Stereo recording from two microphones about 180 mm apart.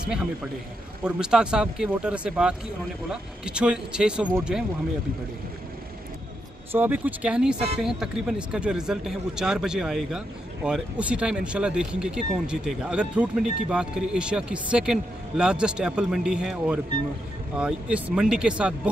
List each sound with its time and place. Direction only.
0.0 s a man's voice: 5° right (ahead or behind)
6.7 s speech: 10° right (ahead or behind)